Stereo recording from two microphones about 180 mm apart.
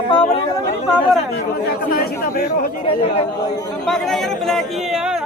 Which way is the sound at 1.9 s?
60° left (ahead or behind).